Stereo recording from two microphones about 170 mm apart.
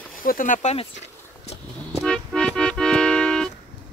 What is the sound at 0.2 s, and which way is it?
Speech, 55° left (ahead or behind).